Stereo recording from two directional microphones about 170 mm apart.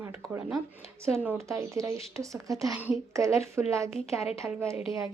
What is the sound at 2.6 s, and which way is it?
A woman's voice, 10° right (ahead or behind).